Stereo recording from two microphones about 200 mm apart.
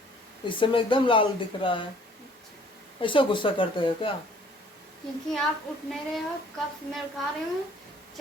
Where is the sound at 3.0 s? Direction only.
25° left (ahead or behind).